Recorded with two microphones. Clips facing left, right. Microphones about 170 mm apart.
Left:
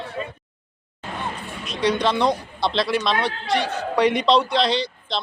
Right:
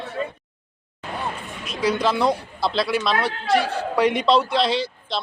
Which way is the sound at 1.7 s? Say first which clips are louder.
Even; 5° right (ahead or behind).